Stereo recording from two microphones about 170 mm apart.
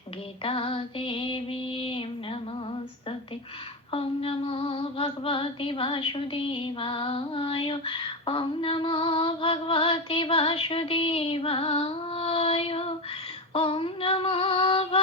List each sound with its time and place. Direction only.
0.4 s female singing: 30° left (ahead or behind)
3.9 s female singing: 35° left (ahead or behind)